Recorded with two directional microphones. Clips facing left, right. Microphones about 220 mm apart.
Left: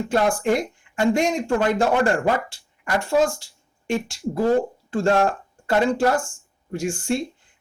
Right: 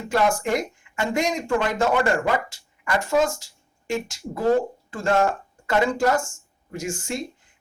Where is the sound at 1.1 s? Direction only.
30° left (ahead or behind).